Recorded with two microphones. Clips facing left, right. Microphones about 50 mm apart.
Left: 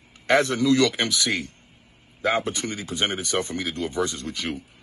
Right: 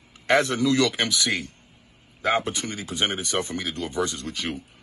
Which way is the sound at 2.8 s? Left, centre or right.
Left.